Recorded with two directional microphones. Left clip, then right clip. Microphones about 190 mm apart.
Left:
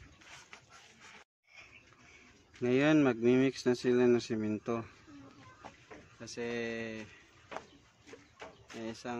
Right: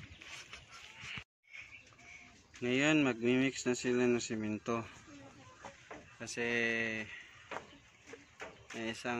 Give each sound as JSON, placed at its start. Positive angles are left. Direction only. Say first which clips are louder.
{"t": 2.6, "sound": "speech", "louder": "left 3 dB", "side_deg": 25}
{"t": 6.1, "sound": "speech", "louder": "right 3 dB", "side_deg": -15}
{"t": 8.7, "sound": "speech", "louder": "right 3 dB", "side_deg": -10}